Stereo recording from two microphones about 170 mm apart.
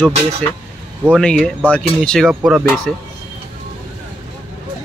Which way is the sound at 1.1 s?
5° left (ahead or behind).